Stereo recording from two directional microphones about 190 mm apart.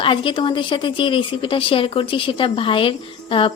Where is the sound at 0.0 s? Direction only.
25° left (ahead or behind).